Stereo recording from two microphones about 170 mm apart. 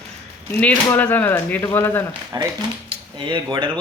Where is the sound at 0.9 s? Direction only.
10° left (ahead or behind).